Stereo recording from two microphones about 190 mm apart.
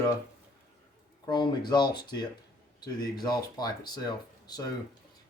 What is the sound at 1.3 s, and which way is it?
Speech, 25° left (ahead or behind).